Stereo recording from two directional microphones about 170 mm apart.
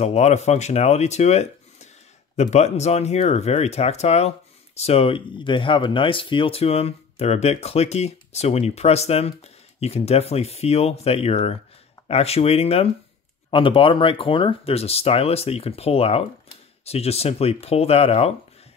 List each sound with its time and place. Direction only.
0.0 s speech: 40° left (ahead or behind)